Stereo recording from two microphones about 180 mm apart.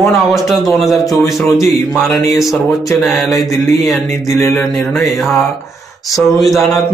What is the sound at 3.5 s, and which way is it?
Speech, 15° left (ahead or behind).